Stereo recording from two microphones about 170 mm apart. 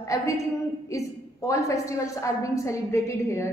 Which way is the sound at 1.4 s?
20° left (ahead or behind).